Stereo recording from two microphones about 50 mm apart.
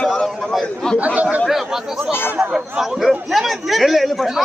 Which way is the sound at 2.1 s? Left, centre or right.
Left.